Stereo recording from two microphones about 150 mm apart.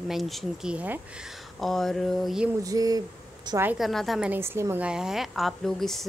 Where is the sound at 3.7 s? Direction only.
Centre (ahead or behind).